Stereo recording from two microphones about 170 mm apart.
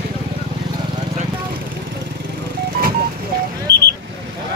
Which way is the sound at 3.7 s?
80° right.